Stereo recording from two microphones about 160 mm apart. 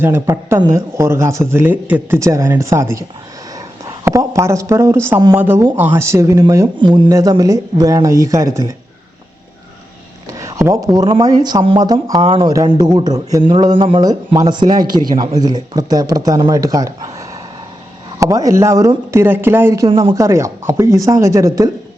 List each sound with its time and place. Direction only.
0.0 s speech: 15° right (ahead or behind)
6.7 s speech: 30° right (ahead or behind)
10.2 s speech: 20° right (ahead or behind)